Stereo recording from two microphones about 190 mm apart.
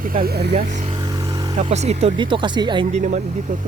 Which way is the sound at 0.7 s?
40° right (ahead or behind).